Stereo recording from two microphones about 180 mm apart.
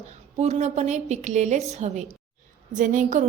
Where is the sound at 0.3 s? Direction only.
35° right (ahead or behind).